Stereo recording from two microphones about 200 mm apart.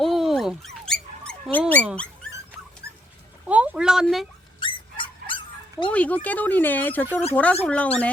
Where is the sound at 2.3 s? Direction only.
15° right (ahead or behind).